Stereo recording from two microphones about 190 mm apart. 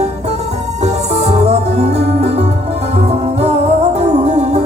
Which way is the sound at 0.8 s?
35° right (ahead or behind).